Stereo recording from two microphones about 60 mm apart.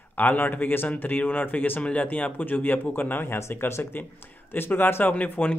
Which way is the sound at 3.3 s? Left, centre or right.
Left.